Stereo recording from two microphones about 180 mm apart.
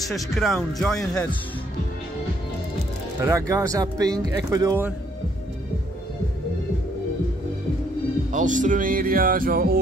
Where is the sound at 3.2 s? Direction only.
15° right (ahead or behind).